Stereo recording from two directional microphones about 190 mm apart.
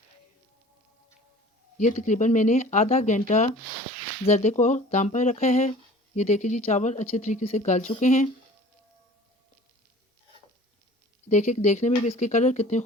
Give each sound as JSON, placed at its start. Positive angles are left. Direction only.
{"t": 1.8, "sound": "speech", "side_deg": 40}
{"t": 11.3, "sound": "speech", "side_deg": 40}